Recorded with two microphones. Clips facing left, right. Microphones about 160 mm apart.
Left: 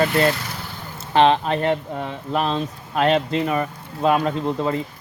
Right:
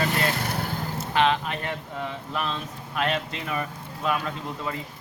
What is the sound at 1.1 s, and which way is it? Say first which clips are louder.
Speech: left 7 dB; 30° left (ahead or behind).